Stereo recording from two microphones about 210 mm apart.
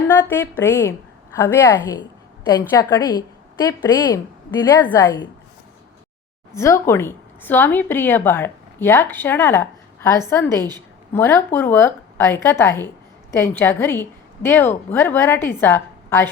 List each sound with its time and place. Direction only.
0.1 s a woman's voice: 10° left (ahead or behind)
6.6 s a woman's voice: 15° left (ahead or behind)
10.6 s a woman's voice: 20° right (ahead or behind)
11.1 s a woman's voice: 10° left (ahead or behind)